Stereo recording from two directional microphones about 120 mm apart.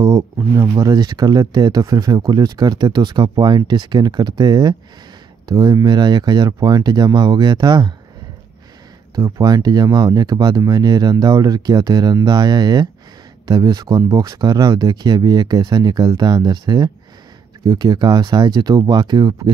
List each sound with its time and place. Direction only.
0.0 s speech: 25° right (ahead or behind)
9.4 s speech: 35° right (ahead or behind)